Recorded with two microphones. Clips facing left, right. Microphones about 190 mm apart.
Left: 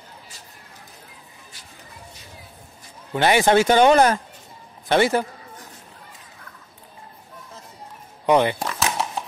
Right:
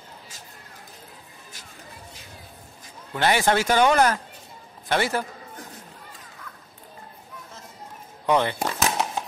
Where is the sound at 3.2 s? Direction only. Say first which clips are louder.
Left 5 dB; 20° left (ahead or behind).